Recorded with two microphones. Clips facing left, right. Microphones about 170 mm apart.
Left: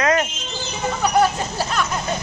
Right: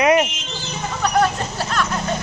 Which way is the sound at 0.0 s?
15° right (ahead or behind).